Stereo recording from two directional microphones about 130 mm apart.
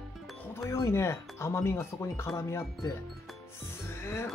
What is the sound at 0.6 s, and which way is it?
Speech, 20° left (ahead or behind).